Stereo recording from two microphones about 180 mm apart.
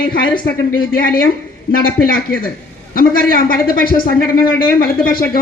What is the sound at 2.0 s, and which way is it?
A man's voice, 55° left (ahead or behind).